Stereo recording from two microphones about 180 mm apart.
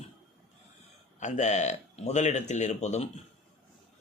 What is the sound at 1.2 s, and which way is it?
A man's voice, 40° left (ahead or behind).